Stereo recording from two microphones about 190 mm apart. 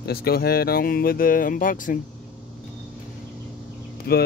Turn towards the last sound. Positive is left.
turn(degrees=55)  # may be behind; listen again after turning